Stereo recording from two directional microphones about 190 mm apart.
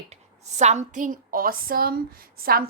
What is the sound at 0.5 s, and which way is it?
A woman's voice, 35° right (ahead or behind).